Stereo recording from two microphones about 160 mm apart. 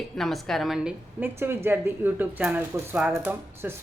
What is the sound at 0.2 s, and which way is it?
Speech, centre (ahead or behind).